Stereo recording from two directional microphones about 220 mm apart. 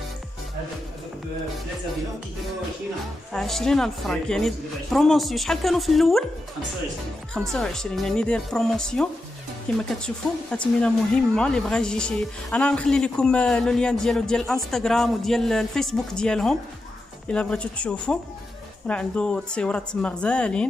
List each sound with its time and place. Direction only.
3.3 s speech: centre (ahead or behind)
7.3 s speech: centre (ahead or behind)